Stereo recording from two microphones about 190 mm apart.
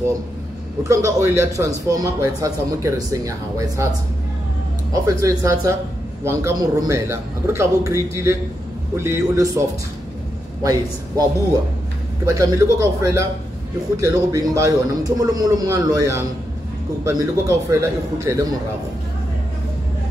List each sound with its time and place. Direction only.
0.8 s speech: 15° right (ahead or behind)
4.9 s speech: 20° right (ahead or behind)
12.3 s a man's voice: 15° right (ahead or behind)